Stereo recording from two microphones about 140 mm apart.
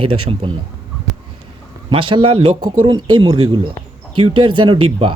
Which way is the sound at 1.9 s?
35° right (ahead or behind).